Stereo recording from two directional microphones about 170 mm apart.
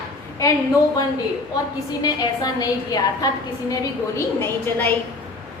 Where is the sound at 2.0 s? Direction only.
25° left (ahead or behind).